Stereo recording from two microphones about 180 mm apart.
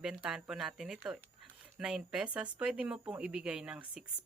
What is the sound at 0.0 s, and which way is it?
Speech, 5° right (ahead or behind).